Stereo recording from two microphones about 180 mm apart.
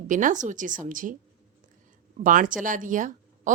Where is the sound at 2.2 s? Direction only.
45° right (ahead or behind).